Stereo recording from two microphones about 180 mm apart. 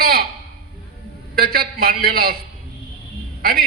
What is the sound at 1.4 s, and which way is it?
Speech, 55° right (ahead or behind).